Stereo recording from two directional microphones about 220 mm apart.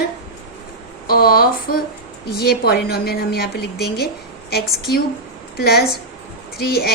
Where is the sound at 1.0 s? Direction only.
40° left (ahead or behind).